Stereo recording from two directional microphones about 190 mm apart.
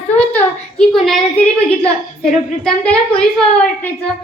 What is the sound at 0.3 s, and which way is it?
A child's voice, 5° left (ahead or behind).